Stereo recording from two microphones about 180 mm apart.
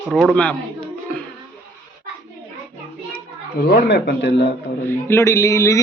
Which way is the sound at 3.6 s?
65° left (ahead or behind).